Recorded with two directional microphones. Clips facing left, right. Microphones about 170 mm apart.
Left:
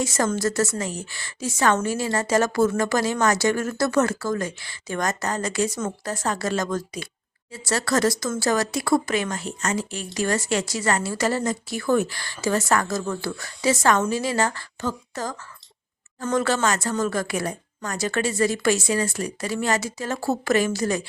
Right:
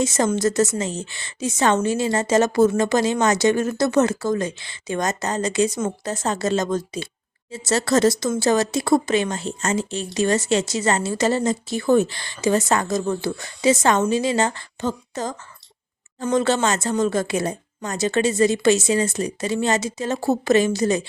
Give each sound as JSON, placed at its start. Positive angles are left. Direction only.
{"t": 0.0, "sound": "speech", "side_deg": -20}